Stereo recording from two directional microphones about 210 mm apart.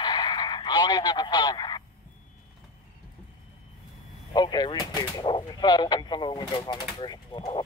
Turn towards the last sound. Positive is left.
turn(degrees=20)  # may be behind; listen again after turning